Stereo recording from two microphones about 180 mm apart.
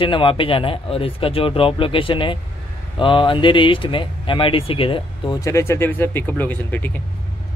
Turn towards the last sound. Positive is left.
turn(degrees=10)  # may be behind; listen again after turning